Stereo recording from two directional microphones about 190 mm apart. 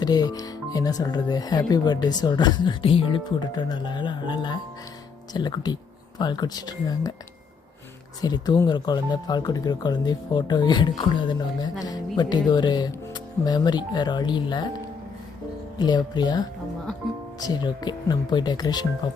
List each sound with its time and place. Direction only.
0.0 s speech: 20° left (ahead or behind)
8.2 s speech: 20° left (ahead or behind)
15.8 s speech: 25° left (ahead or behind)